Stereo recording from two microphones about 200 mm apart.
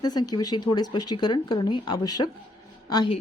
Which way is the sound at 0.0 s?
20° left (ahead or behind).